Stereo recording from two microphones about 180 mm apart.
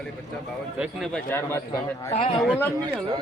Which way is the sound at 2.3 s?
5° right (ahead or behind).